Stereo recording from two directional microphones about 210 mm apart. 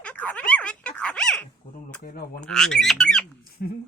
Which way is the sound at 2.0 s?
45° left (ahead or behind).